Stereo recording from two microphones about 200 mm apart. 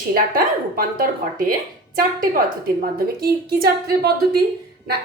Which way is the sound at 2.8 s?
50° right (ahead or behind).